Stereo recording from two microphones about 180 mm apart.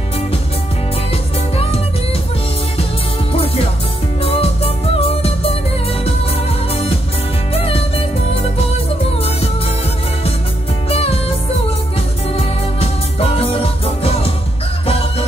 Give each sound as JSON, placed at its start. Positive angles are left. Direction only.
{"t": 4.2, "sound": "music", "side_deg": 35}
{"t": 6.7, "sound": "music", "side_deg": 35}
{"t": 10.9, "sound": "music", "side_deg": 35}
{"t": 12.4, "sound": "music", "side_deg": 35}